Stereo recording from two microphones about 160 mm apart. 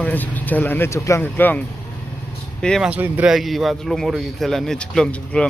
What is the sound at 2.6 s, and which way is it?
Speech, 5° left (ahead or behind).